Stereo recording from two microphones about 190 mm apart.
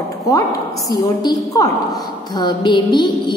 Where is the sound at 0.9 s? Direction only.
20° left (ahead or behind).